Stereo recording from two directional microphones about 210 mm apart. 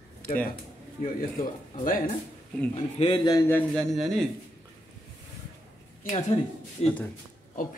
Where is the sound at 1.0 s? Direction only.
40° left (ahead or behind).